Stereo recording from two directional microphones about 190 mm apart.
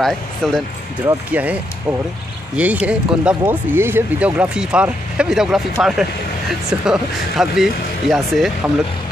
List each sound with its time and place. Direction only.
0.4 s speech: centre (ahead or behind)
1.0 s speech: 10° right (ahead or behind)